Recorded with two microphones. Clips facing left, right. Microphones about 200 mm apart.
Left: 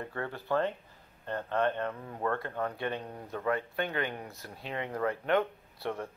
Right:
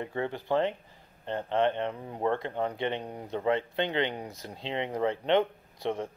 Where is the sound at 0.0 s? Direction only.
20° right (ahead or behind).